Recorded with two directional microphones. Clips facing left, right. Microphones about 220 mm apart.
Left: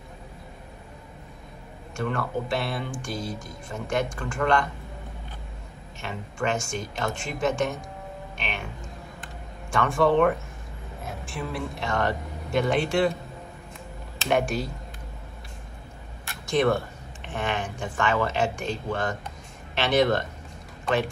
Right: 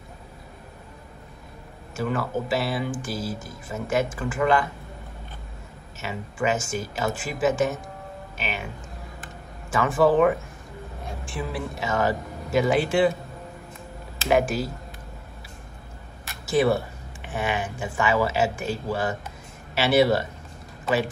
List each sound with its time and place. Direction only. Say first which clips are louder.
2.0 s speech: right 2 dB; 5° right (ahead or behind)
5.9 s speech: right 2 dB; 5° right (ahead or behind)
9.2 s a sound: even; 5° right (ahead or behind)
11.1 s speech: right 1 dB; centre (ahead or behind)
14.1 s speech: right 3 dB; centre (ahead or behind)
16.3 s speech: right 2 dB; 5° right (ahead or behind)